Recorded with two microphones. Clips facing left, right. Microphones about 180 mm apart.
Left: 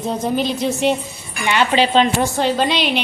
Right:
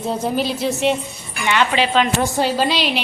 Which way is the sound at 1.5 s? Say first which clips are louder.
Left 2 dB; 30° left (ahead or behind).